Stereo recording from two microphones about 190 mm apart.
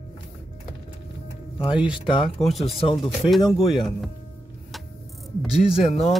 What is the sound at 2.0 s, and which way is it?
Speech, 30° left (ahead or behind).